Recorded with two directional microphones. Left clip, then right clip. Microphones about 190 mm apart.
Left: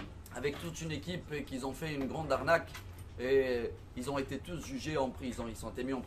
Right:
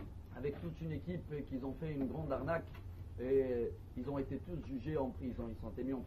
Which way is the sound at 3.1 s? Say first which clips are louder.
Left 4 dB; 20° left (ahead or behind).